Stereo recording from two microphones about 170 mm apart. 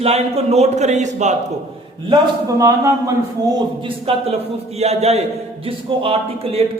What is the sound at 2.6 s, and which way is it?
Speech, 20° right (ahead or behind).